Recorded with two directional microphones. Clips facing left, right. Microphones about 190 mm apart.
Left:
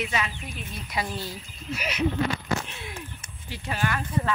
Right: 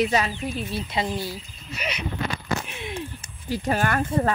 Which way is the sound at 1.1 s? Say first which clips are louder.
Right 4 dB; 10° right (ahead or behind).